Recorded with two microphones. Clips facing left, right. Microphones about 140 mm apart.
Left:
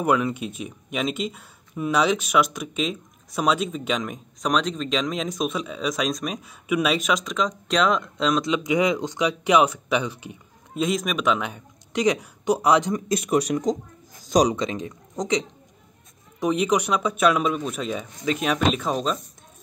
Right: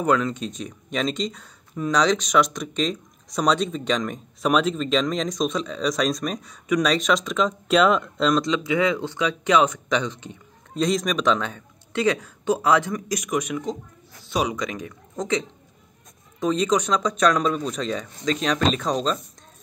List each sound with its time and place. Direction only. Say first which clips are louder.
0.0 s speech: even; 10° left (ahead or behind)
8.5 s speech: even; 15° left (ahead or behind); by 14.6 s 40° left (ahead or behind)
14.6 s speech: left 2 dB; 25° left (ahead or behind); by 19.1 s 5° left (ahead or behind)